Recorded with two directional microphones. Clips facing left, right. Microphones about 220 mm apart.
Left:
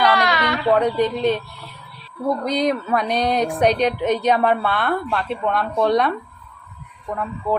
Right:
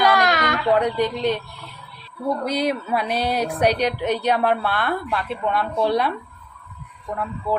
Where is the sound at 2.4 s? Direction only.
5° right (ahead or behind).